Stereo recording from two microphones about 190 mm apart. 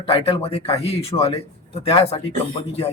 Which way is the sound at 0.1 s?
30° left (ahead or behind).